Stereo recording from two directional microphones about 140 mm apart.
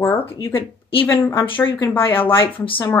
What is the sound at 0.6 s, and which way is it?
Speech, 40° left (ahead or behind).